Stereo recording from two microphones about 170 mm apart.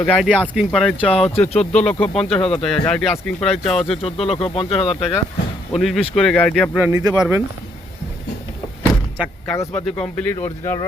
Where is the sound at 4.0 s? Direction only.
35° left (ahead or behind).